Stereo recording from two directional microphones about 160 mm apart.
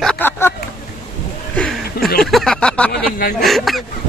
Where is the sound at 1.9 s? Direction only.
75° left (ahead or behind).